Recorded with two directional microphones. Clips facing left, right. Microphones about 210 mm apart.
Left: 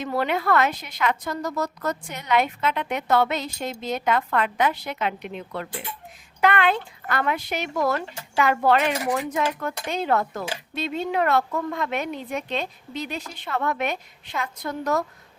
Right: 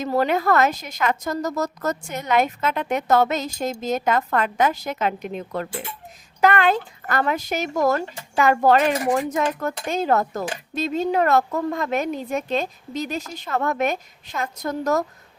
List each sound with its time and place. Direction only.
0.0 s a woman's voice: 40° right (ahead or behind)